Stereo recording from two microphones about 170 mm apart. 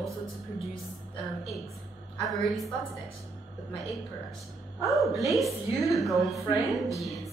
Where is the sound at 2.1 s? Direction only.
Centre (ahead or behind).